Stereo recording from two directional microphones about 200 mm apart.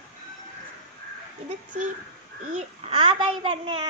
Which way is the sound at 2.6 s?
30° right (ahead or behind).